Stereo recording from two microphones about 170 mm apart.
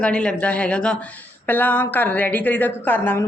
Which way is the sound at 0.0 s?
5° left (ahead or behind).